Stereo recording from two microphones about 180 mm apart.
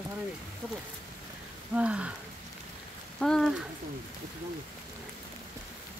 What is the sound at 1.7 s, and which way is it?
Rain, 5° right (ahead or behind).